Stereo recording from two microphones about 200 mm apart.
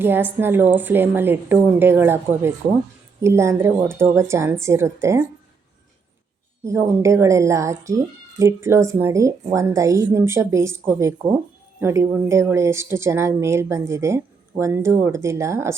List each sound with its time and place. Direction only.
0.0 s speech: 10° right (ahead or behind)
6.7 s speech: 15° right (ahead or behind)